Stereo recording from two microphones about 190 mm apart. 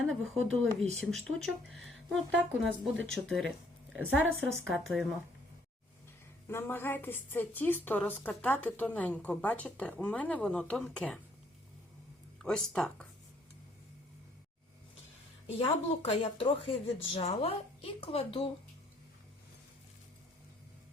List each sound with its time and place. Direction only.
0.0 s a sound: centre (ahead or behind)
0.5 s speech: 5° left (ahead or behind)
6.5 s a woman's voice: 10° left (ahead or behind)
12.4 s speech: 5° left (ahead or behind)
15.4 s speech: 30° left (ahead or behind)